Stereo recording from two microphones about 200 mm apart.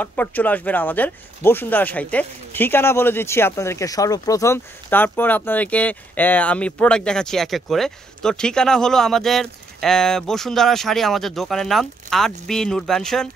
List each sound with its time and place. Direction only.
0.0 s speech: 10° left (ahead or behind)